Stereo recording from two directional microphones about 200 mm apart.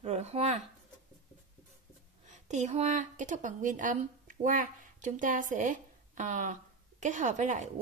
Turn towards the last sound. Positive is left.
turn(degrees=-40)  # may be behind; listen again after turning